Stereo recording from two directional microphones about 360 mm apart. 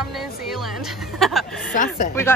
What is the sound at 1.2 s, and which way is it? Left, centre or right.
Speech, centre.